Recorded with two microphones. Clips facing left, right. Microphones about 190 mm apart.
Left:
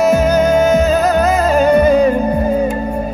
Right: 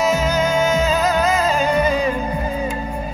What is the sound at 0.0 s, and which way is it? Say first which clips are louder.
Music: left 7 dB; 60° left (ahead or behind).